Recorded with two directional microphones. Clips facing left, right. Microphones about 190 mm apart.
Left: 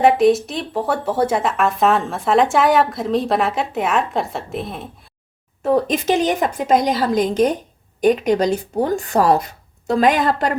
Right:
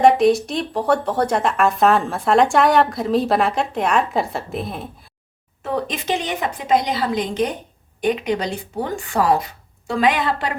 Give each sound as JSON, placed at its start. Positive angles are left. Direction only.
{"t": 0.0, "sound": "speech", "side_deg": 0}
{"t": 5.6, "sound": "a woman's voice", "side_deg": 45}